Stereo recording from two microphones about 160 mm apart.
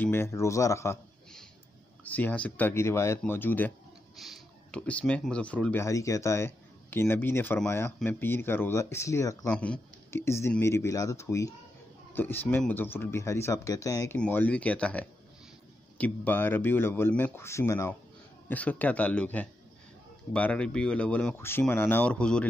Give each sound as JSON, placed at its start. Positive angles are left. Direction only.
{"t": 0.0, "sound": "speech", "side_deg": 15}
{"t": 2.0, "sound": "speech", "side_deg": 10}
{"t": 9.5, "sound": "speech", "side_deg": 10}
{"t": 14.1, "sound": "speech", "side_deg": 10}